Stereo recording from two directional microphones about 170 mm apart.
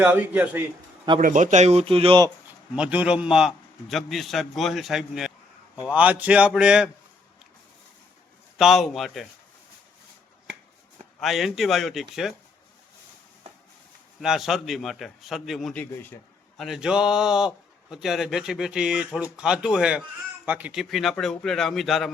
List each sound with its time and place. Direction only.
0.0 s speech: 10° right (ahead or behind)
1.2 s speech: 45° right (ahead or behind); by 2.3 s 30° right (ahead or behind)
2.7 s speech: 5° right (ahead or behind)
8.5 s speech: centre (ahead or behind)
11.2 s speech: centre (ahead or behind)
14.2 s speech: centre (ahead or behind)
16.6 s speech: centre (ahead or behind)